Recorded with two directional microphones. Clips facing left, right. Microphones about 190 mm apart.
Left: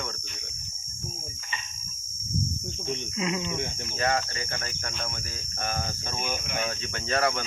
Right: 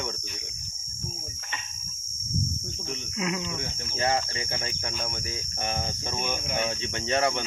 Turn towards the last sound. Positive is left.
turn(degrees=-20)  # may be behind; listen again after turning